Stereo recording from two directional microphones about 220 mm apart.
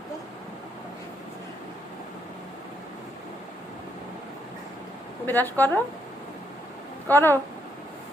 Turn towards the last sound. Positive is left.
turn(degrees=10)  # may be behind; listen again after turning